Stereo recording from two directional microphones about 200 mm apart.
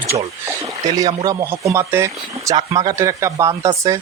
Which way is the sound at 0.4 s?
15° right (ahead or behind).